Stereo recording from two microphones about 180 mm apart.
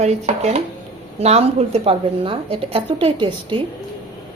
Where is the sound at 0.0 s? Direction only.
40° right (ahead or behind).